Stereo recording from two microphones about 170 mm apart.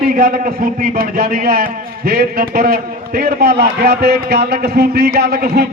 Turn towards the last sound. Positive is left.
turn(degrees=-65)  # may be behind; listen again after turning